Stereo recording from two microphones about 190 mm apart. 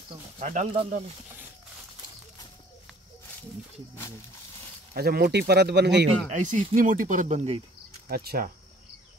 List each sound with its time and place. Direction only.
0.4 s speech: 40° right (ahead or behind)
4.9 s speech: 55° right (ahead or behind)
6.3 s speech: 40° right (ahead or behind)
8.1 s speech: 50° right (ahead or behind)